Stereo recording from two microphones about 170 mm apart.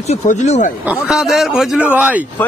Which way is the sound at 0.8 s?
5° right (ahead or behind).